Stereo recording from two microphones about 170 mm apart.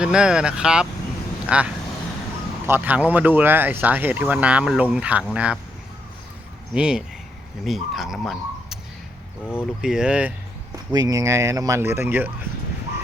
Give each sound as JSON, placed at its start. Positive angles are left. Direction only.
{"t": 0.0, "sound": "speech", "side_deg": -5}
{"t": 6.7, "sound": "speech", "side_deg": -5}
{"t": 9.8, "sound": "speech", "side_deg": -5}
{"t": 10.9, "sound": "speech", "side_deg": -20}